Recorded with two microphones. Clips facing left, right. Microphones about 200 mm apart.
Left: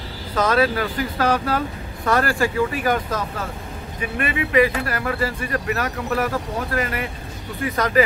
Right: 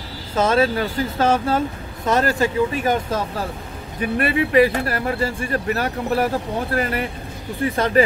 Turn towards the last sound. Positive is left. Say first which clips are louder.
# right 2 dB
turn(degrees=-30)  # may be behind; listen again after turning